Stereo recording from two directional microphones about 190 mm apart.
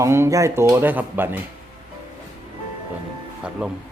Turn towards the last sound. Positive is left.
turn(degrees=-5)  # may be behind; listen again after turning